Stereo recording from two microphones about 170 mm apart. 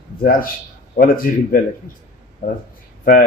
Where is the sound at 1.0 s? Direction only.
55° left (ahead or behind).